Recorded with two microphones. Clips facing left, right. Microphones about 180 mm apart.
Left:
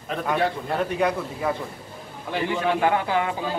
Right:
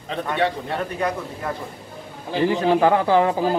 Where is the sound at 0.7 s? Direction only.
5° left (ahead or behind).